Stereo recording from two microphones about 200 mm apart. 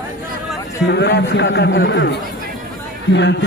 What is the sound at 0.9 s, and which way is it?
A man's voice, 55° left (ahead or behind).